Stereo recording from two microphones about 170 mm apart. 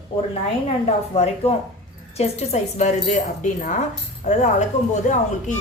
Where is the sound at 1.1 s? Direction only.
35° left (ahead or behind).